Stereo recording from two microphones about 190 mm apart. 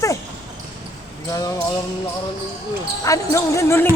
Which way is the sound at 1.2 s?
20° left (ahead or behind).